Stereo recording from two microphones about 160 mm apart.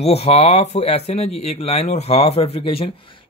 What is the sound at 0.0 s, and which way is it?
Speech, 40° left (ahead or behind).